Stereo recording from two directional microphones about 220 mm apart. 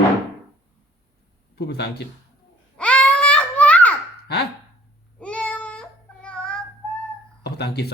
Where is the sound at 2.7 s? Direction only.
5° left (ahead or behind).